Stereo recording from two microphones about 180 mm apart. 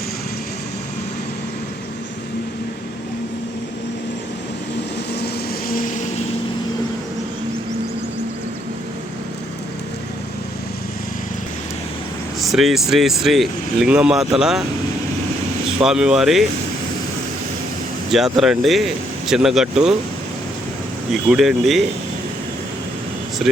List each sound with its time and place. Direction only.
5.2 s vehicle: 55° left (ahead or behind)
12.4 s speech: centre (ahead or behind)
15.8 s speech: 5° right (ahead or behind)
18.1 s speech: centre (ahead or behind)
21.1 s speech: centre (ahead or behind)